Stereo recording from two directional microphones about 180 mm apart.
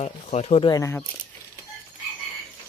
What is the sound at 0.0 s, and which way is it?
Speech, 40° left (ahead or behind).